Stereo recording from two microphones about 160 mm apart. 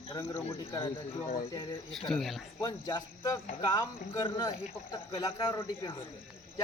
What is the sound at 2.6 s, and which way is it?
Speech, 25° left (ahead or behind).